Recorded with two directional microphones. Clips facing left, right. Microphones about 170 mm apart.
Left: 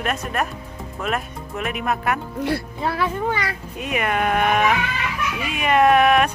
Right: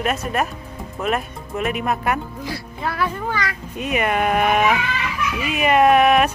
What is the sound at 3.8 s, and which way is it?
Speech, centre (ahead or behind).